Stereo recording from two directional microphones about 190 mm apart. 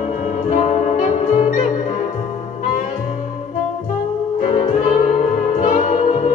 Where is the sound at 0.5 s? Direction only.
40° left (ahead or behind).